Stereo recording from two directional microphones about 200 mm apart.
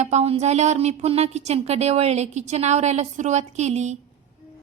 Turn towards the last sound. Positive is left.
turn(degrees=-35)  # may be behind; listen again after turning